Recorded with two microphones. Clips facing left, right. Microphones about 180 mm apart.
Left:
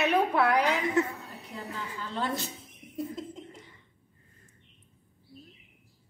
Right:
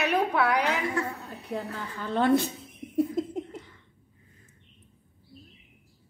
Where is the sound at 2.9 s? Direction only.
60° right (ahead or behind).